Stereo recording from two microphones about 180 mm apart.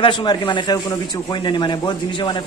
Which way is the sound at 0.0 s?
25° left (ahead or behind).